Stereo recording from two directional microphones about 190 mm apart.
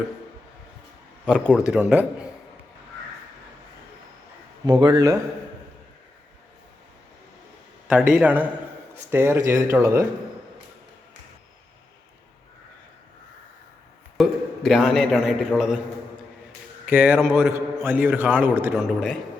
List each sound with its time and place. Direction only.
1.3 s a man's voice: 5° right (ahead or behind)
4.6 s speech: 20° right (ahead or behind)
7.9 s a man's voice: 5° right (ahead or behind)
14.2 s a man's voice: centre (ahead or behind)
16.8 s a man's voice: 10° right (ahead or behind)
18.7 s a man's voice: centre (ahead or behind)